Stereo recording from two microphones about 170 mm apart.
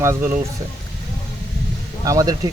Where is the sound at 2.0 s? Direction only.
20° right (ahead or behind).